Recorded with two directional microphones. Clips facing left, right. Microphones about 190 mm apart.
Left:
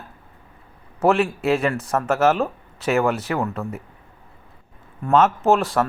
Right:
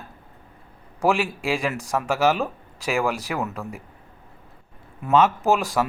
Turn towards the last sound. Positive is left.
turn(degrees=0)  # may be behind; listen again after turning